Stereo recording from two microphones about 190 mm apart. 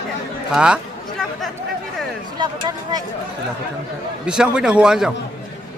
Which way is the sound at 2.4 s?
20° right (ahead or behind).